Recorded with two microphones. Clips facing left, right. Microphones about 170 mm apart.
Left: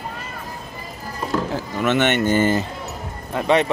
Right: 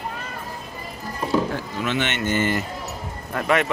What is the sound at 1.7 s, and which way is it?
Speech, 60° left (ahead or behind).